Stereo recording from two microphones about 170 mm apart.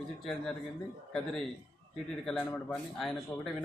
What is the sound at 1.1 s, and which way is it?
Speech, centre (ahead or behind).